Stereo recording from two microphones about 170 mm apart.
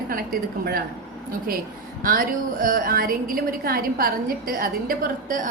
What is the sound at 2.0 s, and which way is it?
A woman's voice, 55° right (ahead or behind).